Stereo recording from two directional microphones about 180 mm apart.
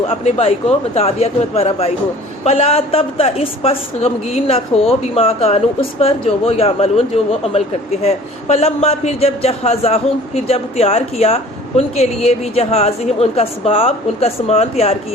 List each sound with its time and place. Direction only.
0.1 s a man's voice: 35° left (ahead or behind)
8.0 s a man's voice: 35° left (ahead or behind)